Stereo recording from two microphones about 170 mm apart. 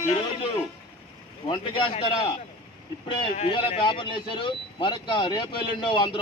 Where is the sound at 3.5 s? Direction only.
30° left (ahead or behind).